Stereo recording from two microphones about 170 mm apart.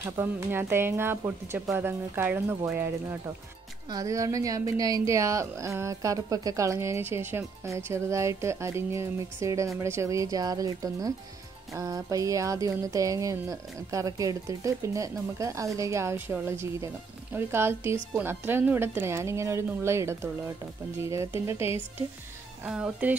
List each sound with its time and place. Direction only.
0.0 s a woman's voice: 15° right (ahead or behind)